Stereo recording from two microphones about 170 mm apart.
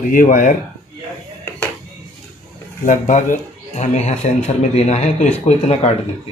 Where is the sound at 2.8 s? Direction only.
45° left (ahead or behind).